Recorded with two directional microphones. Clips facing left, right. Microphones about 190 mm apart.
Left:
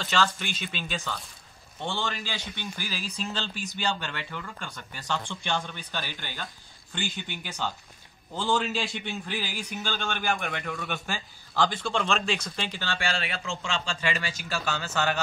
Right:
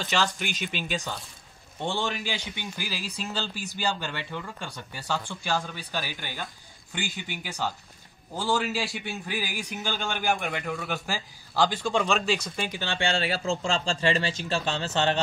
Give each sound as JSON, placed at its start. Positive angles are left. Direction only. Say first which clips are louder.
{"t": 0.0, "sound": "a man's voice", "louder": "even", "side_deg": -15}
{"t": 5.3, "sound": "a man's voice", "louder": "right 1 dB", "side_deg": -5}
{"t": 10.5, "sound": "a man's voice", "louder": "right 2 dB", "side_deg": -5}